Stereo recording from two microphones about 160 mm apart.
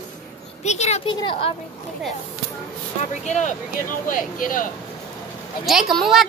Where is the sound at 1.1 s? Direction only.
30° left (ahead or behind).